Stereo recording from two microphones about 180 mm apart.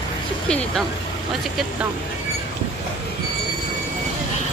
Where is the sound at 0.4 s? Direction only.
5° left (ahead or behind).